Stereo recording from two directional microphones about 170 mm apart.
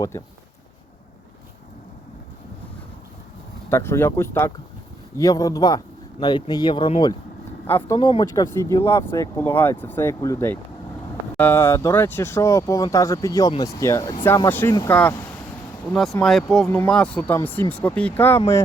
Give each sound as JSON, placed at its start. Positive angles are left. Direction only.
{"t": 0.1, "sound": "speech", "side_deg": 15}
{"t": 3.7, "sound": "speech", "side_deg": 15}
{"t": 7.7, "sound": "speech", "side_deg": 10}
{"t": 7.9, "sound": "speech", "side_deg": 25}
{"t": 15.9, "sound": "speech", "side_deg": 0}
{"t": 16.6, "sound": "speech", "side_deg": 10}